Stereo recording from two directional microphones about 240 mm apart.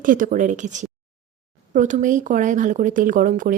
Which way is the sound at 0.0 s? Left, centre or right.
Right.